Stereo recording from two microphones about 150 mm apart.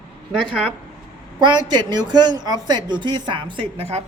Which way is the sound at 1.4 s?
30° right (ahead or behind).